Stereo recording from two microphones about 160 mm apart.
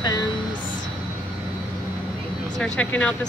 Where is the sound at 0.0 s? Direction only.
25° left (ahead or behind).